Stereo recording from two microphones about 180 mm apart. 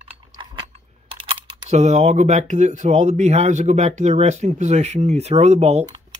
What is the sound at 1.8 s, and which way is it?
Speech, 40° right (ahead or behind).